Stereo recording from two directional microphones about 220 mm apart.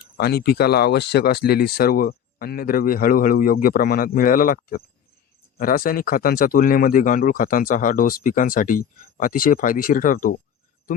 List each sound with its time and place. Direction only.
0.2 s speech: 45° left (ahead or behind)